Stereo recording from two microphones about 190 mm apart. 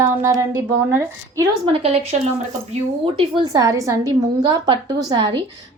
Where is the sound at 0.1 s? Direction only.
15° right (ahead or behind).